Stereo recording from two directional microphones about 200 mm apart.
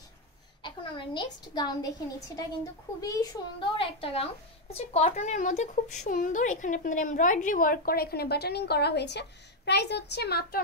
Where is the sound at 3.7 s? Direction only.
30° left (ahead or behind).